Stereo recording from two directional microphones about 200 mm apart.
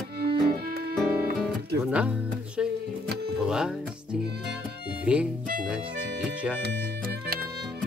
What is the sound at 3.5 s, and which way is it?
Speech, 5° right (ahead or behind).